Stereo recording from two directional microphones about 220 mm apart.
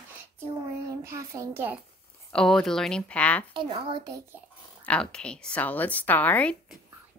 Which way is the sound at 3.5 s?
20° right (ahead or behind).